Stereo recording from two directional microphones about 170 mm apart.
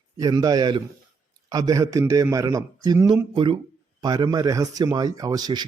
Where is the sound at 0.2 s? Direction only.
20° right (ahead or behind).